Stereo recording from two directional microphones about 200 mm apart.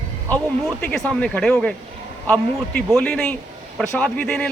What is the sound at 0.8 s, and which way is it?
A man's voice, 5° left (ahead or behind).